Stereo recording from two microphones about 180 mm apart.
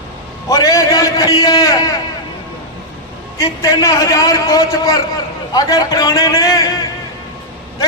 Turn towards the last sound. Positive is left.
turn(degrees=20)  # may be behind; listen again after turning